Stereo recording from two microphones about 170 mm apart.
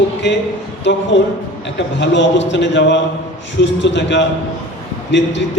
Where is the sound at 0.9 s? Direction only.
90° left.